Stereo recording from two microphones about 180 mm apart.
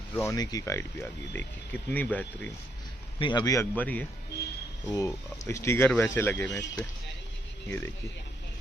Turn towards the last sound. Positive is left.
turn(degrees=10)  # may be behind; listen again after turning